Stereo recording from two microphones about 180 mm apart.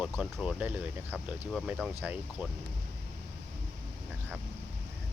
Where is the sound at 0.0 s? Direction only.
5° right (ahead or behind).